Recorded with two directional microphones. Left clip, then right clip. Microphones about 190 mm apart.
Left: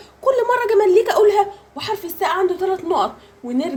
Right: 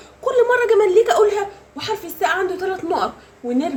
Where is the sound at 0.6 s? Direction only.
40° left (ahead or behind).